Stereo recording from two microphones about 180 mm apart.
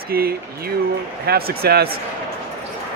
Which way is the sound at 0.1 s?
55° right (ahead or behind).